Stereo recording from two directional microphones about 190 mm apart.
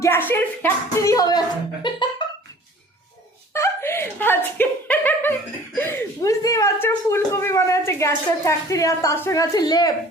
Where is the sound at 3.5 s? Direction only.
15° left (ahead or behind).